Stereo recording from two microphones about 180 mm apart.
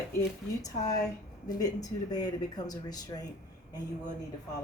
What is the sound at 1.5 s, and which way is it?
Speech, 20° left (ahead or behind).